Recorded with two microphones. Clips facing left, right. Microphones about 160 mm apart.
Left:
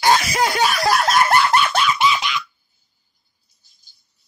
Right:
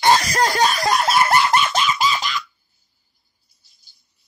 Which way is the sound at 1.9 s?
40° right (ahead or behind).